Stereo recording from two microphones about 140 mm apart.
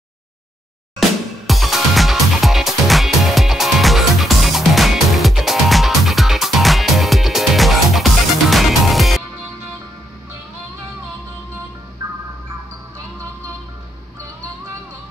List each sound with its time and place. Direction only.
1.5 s music: centre (ahead or behind)